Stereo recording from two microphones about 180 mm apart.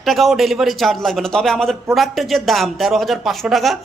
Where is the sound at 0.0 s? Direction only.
Centre (ahead or behind).